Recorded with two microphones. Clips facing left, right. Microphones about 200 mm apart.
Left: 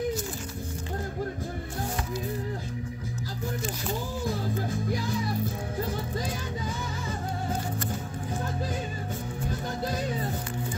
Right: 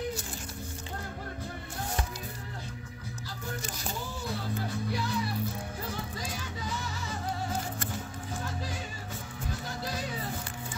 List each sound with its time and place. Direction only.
4.6 s music: 50° left (ahead or behind)